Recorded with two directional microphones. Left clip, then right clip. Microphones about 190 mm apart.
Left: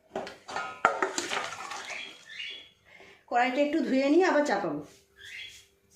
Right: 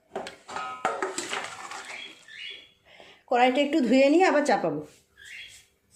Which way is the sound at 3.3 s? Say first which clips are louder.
Right 4 dB; 45° right (ahead or behind).